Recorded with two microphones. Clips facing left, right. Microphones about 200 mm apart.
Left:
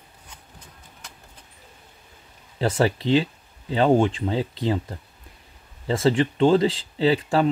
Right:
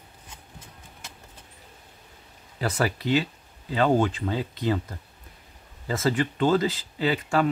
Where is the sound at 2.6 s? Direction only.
25° left (ahead or behind).